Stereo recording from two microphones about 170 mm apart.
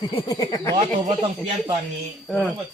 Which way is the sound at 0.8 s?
35° right (ahead or behind).